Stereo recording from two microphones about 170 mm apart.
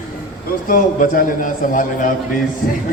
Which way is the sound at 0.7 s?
55° left (ahead or behind).